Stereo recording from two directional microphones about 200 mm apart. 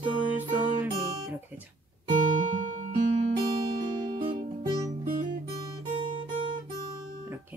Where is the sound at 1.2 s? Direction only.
10° right (ahead or behind).